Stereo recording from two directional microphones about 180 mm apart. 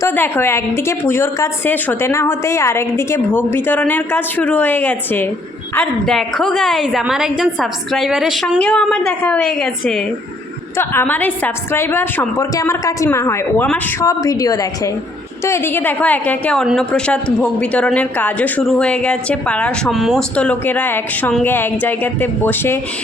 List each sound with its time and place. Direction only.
0.0 s a woman's voice: 10° left (ahead or behind)